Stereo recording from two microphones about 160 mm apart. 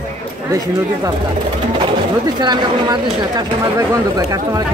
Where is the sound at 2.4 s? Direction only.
25° right (ahead or behind).